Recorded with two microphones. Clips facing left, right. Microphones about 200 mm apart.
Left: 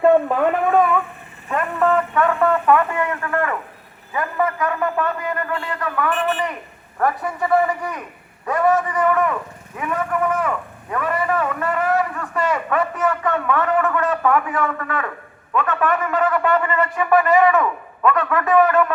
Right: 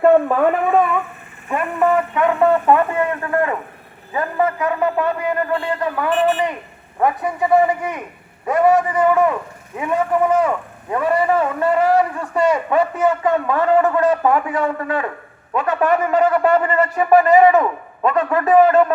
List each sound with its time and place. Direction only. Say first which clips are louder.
0.0 s speech: right 2 dB; centre (ahead or behind); by 4.5 s 30° right (ahead or behind)
4.6 s shofar: right 3 dB; 15° right (ahead or behind)
5.0 s a man's voice: right 4 dB; 30° right (ahead or behind)
7.7 s a man's voice: right 3 dB; 25° right (ahead or behind)